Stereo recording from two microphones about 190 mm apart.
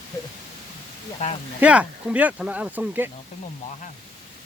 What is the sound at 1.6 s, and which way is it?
Speech, 5° right (ahead or behind).